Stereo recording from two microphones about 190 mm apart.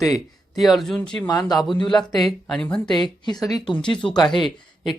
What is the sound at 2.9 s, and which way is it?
Speech, 25° left (ahead or behind).